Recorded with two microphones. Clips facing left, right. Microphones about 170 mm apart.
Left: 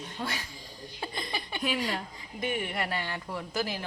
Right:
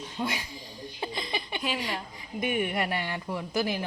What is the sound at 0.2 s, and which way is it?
Speech, 15° right (ahead or behind).